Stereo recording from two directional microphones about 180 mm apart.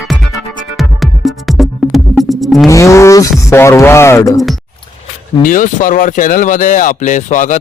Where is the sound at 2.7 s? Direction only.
15° left (ahead or behind).